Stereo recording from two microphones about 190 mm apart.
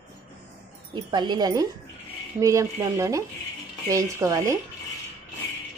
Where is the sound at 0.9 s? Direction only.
25° right (ahead or behind).